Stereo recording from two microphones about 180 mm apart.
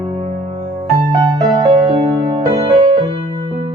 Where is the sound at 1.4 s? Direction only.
25° right (ahead or behind).